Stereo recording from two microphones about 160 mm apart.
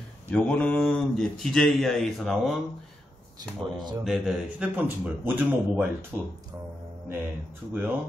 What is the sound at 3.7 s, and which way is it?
Speech, 25° right (ahead or behind).